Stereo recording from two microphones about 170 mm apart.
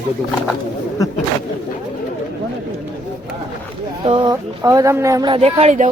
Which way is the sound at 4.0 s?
25° right (ahead or behind).